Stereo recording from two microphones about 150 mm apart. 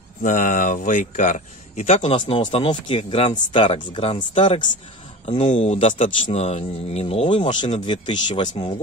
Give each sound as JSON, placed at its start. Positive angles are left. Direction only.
{"t": 0.2, "sound": "speech", "side_deg": 60}
{"t": 5.4, "sound": "speech", "side_deg": 45}